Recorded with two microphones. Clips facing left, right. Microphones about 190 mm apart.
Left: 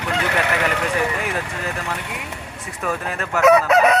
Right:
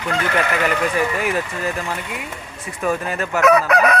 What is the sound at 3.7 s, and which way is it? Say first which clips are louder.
Fowl: left 1 dB; 25° left (ahead or behind).